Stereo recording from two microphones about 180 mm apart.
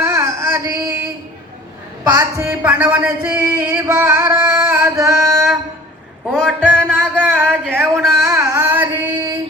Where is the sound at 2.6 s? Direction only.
5° right (ahead or behind).